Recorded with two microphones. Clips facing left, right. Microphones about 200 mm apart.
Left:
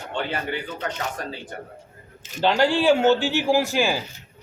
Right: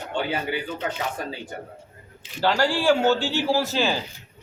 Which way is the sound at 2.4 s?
20° left (ahead or behind).